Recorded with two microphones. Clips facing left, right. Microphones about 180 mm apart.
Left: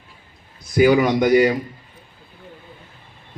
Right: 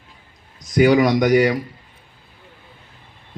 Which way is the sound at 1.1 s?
80° right.